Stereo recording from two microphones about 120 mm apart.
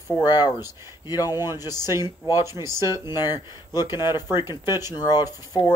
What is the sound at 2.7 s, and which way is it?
Speech, 30° left (ahead or behind).